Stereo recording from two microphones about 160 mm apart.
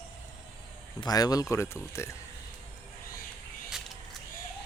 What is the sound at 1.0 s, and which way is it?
Speech, 25° left (ahead or behind).